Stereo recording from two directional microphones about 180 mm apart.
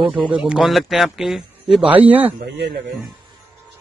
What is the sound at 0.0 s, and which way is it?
Speech, 30° right (ahead or behind).